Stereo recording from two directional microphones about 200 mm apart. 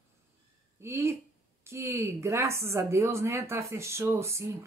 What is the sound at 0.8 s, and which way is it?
A woman's voice, 10° right (ahead or behind).